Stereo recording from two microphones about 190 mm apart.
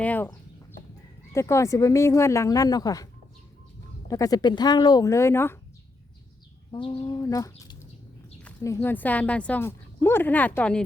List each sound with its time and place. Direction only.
0.0 s speech: 10° left (ahead or behind)
1.3 s speech: 15° left (ahead or behind)
4.1 s speech: 20° left (ahead or behind)
6.7 s speech: 25° left (ahead or behind)
7.2 s speech: 15° left (ahead or behind)